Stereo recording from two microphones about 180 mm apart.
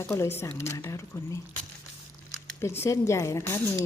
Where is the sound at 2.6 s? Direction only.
15° left (ahead or behind).